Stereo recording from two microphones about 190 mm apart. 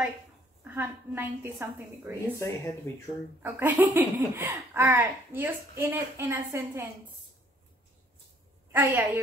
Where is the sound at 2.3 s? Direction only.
15° left (ahead or behind).